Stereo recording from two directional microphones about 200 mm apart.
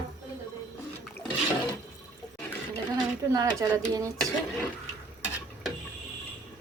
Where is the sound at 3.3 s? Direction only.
15° right (ahead or behind).